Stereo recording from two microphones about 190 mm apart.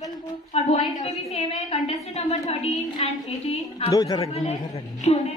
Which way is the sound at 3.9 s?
20° left (ahead or behind).